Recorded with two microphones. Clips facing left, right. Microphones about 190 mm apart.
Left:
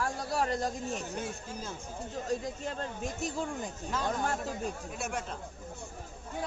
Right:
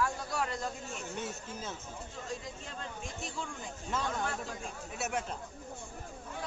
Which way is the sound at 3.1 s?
40° left (ahead or behind).